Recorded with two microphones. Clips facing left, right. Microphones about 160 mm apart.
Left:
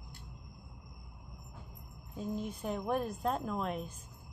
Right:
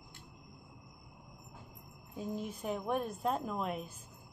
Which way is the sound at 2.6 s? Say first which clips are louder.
Left 1 dB; centre (ahead or behind).